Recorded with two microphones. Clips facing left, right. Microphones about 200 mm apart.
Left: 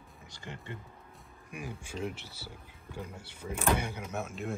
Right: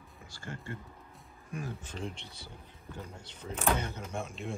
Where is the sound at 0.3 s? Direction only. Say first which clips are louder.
Right 2 dB; 20° left (ahead or behind).